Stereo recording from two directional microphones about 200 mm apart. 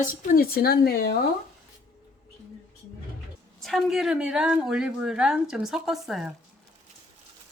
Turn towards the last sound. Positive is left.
turn(degrees=0)  # may be behind; listen again after turning